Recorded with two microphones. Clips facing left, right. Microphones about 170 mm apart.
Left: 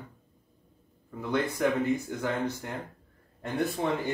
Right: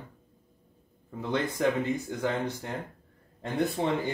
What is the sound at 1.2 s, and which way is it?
Speech, 20° right (ahead or behind).